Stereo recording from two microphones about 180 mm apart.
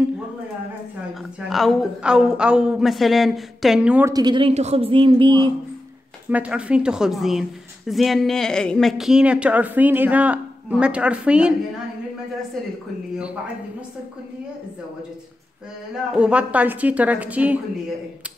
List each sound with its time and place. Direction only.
1.5 s a woman's voice: centre (ahead or behind)
4.1 s a man's voice: 25° right (ahead or behind)
6.2 s a woman's voice: 10° right (ahead or behind)
16.1 s a woman's voice: 5° right (ahead or behind)